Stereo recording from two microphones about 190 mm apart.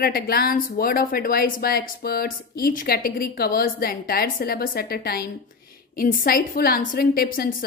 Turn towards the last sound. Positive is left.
turn(degrees=50)  # may be behind; listen again after turning